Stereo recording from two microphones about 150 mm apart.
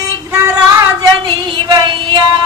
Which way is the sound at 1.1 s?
30° right (ahead or behind).